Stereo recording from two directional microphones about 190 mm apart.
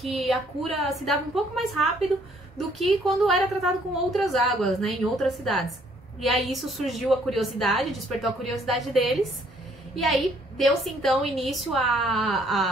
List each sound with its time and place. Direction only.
0.0 s a woman's voice: centre (ahead or behind)